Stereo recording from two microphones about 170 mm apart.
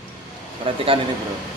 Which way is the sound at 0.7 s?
35° right (ahead or behind).